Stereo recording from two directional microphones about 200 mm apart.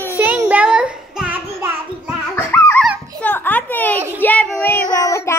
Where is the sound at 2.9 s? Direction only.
5° left (ahead or behind).